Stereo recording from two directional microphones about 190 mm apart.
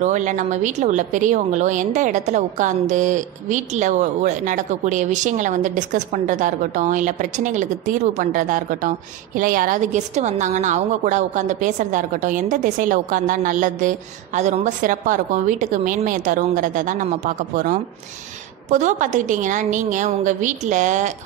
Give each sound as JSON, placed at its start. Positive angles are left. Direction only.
{"t": 0.0, "sound": "a woman's voice", "side_deg": -40}